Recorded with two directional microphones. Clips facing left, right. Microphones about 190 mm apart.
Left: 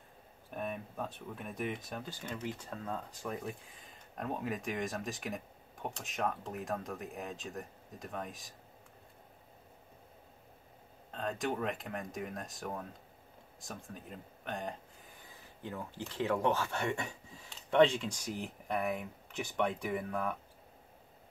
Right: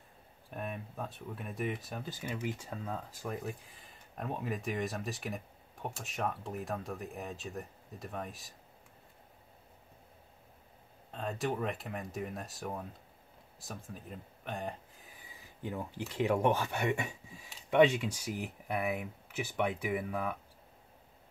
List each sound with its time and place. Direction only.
0.5 s speech: centre (ahead or behind)
11.1 s speech: centre (ahead or behind)
15.6 s speech: 15° right (ahead or behind)